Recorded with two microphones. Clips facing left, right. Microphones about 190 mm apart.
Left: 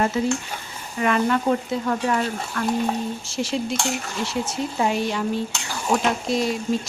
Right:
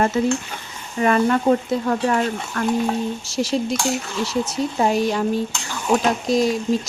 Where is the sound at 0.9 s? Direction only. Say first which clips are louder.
Right 3 dB; 40° right (ahead or behind).